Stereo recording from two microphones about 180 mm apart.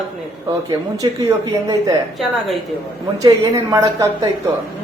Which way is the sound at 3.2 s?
20° right (ahead or behind).